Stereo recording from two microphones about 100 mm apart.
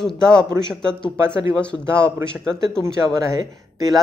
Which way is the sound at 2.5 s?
5° left (ahead or behind).